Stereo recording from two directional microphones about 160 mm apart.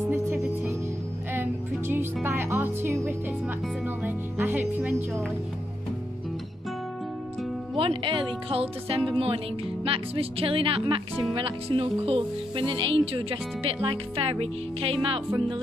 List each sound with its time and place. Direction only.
0.1 s music: 10° right (ahead or behind)
7.7 s speech: 35° right (ahead or behind)